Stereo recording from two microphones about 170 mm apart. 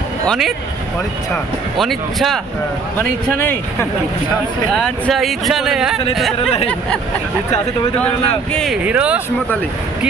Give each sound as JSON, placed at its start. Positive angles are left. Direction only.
{"t": 0.3, "sound": "speech", "side_deg": 0}
{"t": 3.0, "sound": "speech", "side_deg": 10}
{"t": 4.7, "sound": "speech", "side_deg": 5}
{"t": 8.5, "sound": "speech", "side_deg": -5}